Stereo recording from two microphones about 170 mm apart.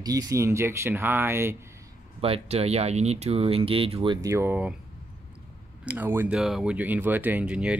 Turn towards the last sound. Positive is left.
turn(degrees=-5)  # may be behind; listen again after turning